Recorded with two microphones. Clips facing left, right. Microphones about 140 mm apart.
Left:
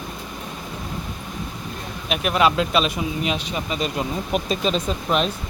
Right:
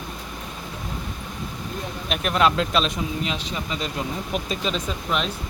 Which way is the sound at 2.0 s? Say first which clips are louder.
Left 2 dB; 5° left (ahead or behind).